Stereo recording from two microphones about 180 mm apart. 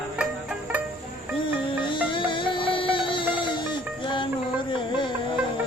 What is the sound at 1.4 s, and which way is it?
Music, 30° left (ahead or behind).